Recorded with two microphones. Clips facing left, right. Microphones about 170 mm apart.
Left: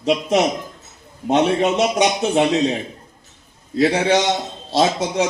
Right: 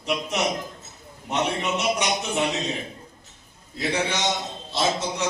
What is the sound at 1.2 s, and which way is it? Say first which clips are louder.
A man's voice: left 9 dB; 85° left.